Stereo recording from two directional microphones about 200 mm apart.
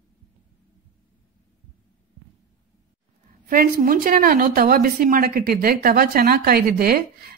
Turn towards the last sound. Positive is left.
turn(degrees=-50)  # may be behind; listen again after turning